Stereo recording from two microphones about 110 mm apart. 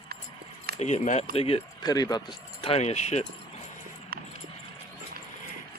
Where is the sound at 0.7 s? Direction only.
90° left; by 1.6 s 60° left (ahead or behind).